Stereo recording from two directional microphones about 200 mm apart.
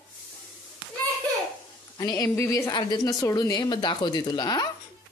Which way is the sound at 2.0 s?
15° left (ahead or behind).